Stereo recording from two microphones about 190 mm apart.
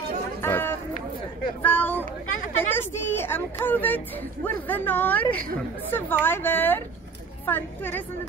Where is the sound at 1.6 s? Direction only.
10° left (ahead or behind).